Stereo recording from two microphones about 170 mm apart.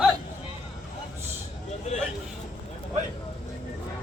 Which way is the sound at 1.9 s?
40° left (ahead or behind).